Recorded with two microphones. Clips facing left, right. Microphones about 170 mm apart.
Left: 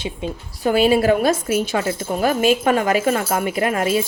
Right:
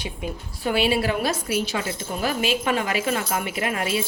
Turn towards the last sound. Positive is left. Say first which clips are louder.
# left 6 dB
turn(degrees=45)  # may be behind; listen again after turning